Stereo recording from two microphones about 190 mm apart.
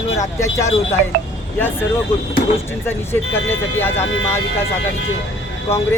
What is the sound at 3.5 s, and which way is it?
Speech, 10° left (ahead or behind).